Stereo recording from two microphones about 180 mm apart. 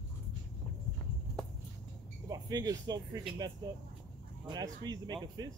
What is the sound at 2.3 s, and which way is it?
Speech, 20° right (ahead or behind).